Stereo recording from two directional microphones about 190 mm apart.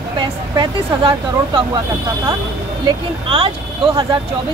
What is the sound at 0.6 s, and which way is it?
Speech, 25° right (ahead or behind).